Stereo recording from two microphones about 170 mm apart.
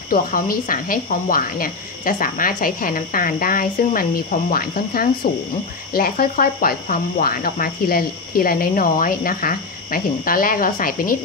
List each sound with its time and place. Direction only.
0.1 s speech: 55° left (ahead or behind)